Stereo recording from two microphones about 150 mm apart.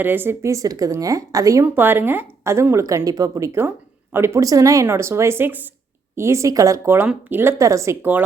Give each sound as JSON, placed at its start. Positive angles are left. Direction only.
{"t": 0.0, "sound": "a woman's voice", "side_deg": -15}